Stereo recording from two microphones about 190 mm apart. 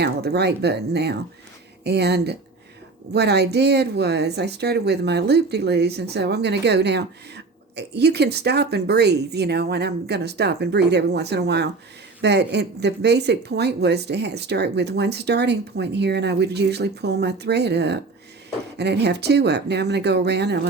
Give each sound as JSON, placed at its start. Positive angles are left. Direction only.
{"t": 0.0, "sound": "speech", "side_deg": -60}